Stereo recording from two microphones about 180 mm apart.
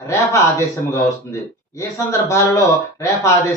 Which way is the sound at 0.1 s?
15° left (ahead or behind).